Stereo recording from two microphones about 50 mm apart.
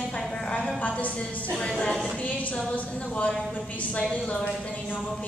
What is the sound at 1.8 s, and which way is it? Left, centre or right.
Speech, centre.